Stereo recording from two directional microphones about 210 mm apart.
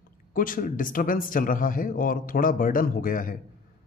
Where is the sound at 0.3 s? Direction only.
40° left (ahead or behind).